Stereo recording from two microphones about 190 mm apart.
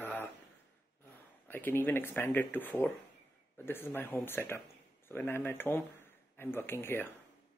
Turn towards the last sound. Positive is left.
turn(degrees=10)  # may be behind; listen again after turning